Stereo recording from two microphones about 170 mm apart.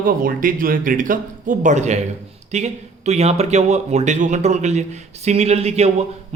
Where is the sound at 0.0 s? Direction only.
55° right (ahead or behind).